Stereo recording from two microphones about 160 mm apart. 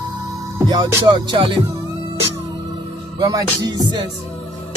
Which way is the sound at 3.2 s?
25° right (ahead or behind).